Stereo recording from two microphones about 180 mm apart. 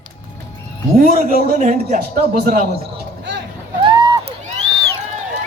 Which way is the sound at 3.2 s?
75° right (ahead or behind).